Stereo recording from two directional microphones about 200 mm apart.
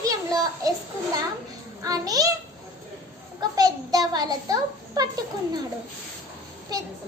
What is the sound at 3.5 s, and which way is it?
A child's voice, 20° right (ahead or behind).